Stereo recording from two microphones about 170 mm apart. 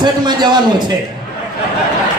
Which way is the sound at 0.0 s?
25° right (ahead or behind).